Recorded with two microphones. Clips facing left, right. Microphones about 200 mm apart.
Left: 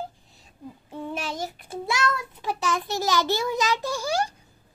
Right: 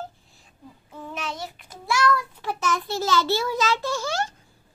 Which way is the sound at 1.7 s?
20° left (ahead or behind).